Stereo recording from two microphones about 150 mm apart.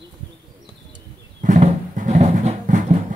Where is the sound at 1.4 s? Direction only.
60° right (ahead or behind).